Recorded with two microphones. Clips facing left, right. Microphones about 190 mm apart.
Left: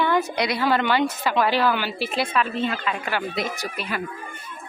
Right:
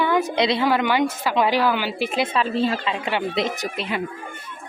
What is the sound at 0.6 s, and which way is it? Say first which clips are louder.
A woman's voice: right 1 dB; 10° right (ahead or behind).